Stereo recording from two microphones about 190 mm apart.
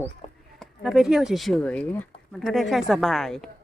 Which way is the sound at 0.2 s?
30° left (ahead or behind).